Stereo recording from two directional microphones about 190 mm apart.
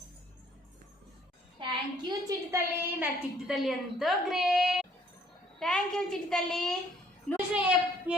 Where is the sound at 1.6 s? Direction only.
25° right (ahead or behind).